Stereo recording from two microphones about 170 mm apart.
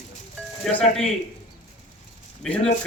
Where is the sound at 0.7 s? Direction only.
5° left (ahead or behind).